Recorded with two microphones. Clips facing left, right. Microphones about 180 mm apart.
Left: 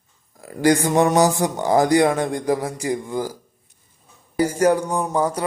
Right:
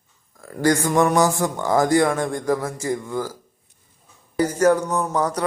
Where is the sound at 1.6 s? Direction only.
15° left (ahead or behind).